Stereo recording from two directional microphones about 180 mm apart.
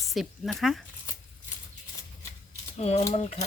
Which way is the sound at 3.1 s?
35° left (ahead or behind).